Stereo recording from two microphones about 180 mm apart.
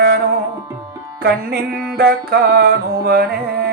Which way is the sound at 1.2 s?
60° right (ahead or behind).